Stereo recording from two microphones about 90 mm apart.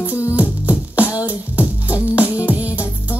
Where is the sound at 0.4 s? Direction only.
15° right (ahead or behind).